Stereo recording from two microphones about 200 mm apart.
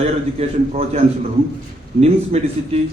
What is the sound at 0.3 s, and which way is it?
A man's voice, 30° right (ahead or behind).